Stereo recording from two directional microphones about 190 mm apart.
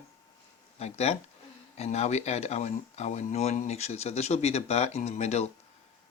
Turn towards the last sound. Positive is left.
turn(degrees=35)  # may be behind; listen again after turning